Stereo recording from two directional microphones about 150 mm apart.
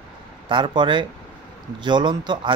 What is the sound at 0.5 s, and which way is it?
Speech, 35° right (ahead or behind).